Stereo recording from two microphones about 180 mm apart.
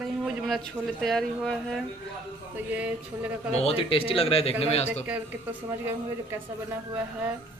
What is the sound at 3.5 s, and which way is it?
A man's voice, 35° left (ahead or behind).